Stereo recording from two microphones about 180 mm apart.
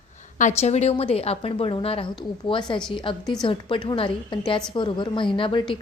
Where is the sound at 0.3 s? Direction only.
40° left (ahead or behind).